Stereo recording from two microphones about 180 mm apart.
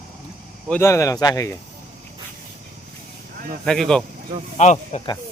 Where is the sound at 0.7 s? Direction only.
15° left (ahead or behind).